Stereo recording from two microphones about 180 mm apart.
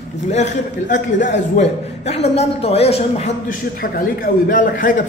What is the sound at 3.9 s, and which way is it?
A man's voice, 50° left (ahead or behind).